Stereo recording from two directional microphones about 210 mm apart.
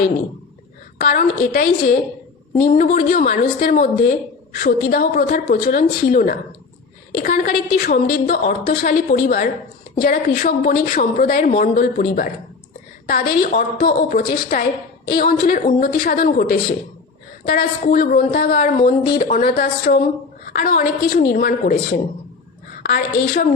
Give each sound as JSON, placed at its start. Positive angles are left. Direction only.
{"t": 0.9, "sound": "a woman's voice", "side_deg": 45}